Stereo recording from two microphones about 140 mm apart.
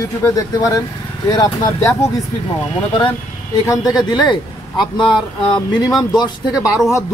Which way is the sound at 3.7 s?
30° left (ahead or behind).